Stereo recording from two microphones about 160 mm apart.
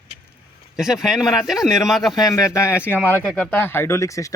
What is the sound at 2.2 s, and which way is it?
Speech, 20° left (ahead or behind).